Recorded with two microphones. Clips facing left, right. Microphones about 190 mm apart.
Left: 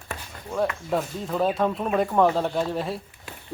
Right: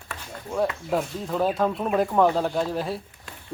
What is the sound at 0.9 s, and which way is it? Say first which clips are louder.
Speech: even; centre (ahead or behind).